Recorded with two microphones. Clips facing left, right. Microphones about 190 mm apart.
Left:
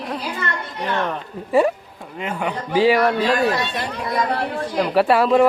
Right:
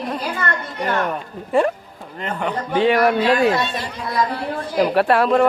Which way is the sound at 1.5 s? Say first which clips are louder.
Left 1 dB; 5° left (ahead or behind).